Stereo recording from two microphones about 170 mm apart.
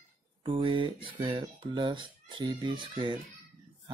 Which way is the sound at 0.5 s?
30° right (ahead or behind).